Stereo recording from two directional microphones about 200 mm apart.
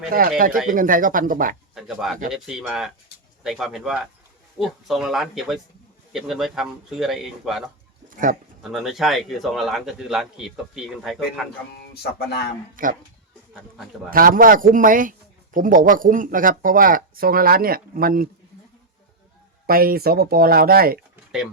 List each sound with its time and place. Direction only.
0.1 s speech: 45° right (ahead or behind)
1.7 s speech: centre (ahead or behind)
8.1 s speech: 40° right (ahead or behind)
8.7 s speech: centre (ahead or behind)
12.0 s speech: 55° left (ahead or behind)
12.7 s speech: 45° right (ahead or behind)
13.5 s speech: centre (ahead or behind)
14.1 s speech: 45° right (ahead or behind)
19.6 s speech: 50° right (ahead or behind)